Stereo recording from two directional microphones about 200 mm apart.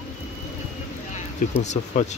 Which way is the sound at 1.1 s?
35° left (ahead or behind).